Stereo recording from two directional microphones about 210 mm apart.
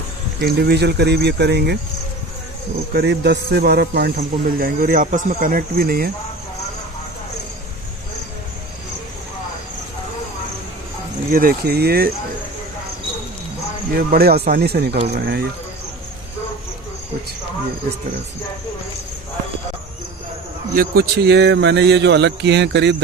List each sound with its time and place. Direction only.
0.4 s a man's voice: 50° right (ahead or behind)
2.9 s a man's voice: 50° right (ahead or behind)
11.3 s a man's voice: 45° right (ahead or behind)
13.9 s a man's voice: 45° right (ahead or behind)
20.7 s a man's voice: 45° right (ahead or behind)